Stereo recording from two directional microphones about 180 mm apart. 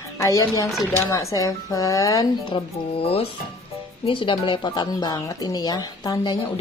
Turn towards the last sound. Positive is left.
turn(degrees=20)  # may be behind; listen again after turning